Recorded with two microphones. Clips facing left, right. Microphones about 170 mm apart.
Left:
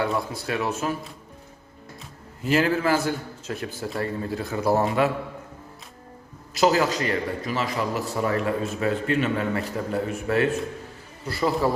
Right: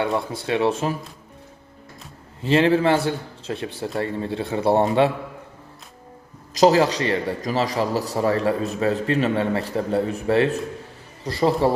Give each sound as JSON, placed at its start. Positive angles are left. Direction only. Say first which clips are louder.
{"t": 0.0, "sound": "a man's voice", "louder": "right 2 dB", "side_deg": -25}
{"t": 2.4, "sound": "a man's voice", "louder": "right 4 dB", "side_deg": -30}
{"t": 6.6, "sound": "a man's voice", "louder": "right 4 dB", "side_deg": -35}